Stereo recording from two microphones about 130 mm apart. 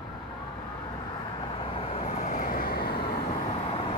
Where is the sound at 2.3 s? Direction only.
90° left.